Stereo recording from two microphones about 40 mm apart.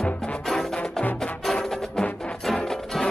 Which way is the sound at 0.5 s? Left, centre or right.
Centre.